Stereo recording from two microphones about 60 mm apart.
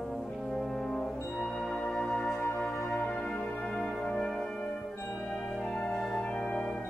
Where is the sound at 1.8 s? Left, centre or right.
Centre.